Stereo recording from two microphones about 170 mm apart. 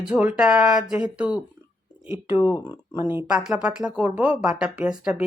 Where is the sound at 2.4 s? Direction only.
20° left (ahead or behind).